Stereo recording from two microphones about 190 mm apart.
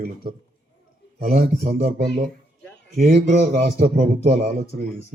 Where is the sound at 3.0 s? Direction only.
45° right (ahead or behind).